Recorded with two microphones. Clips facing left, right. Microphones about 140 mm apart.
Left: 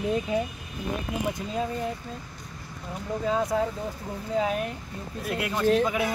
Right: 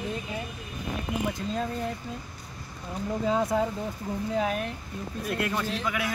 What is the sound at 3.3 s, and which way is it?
Speech, 5° right (ahead or behind).